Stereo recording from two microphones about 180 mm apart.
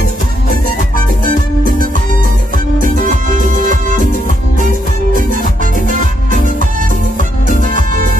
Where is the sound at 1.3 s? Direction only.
50° right (ahead or behind).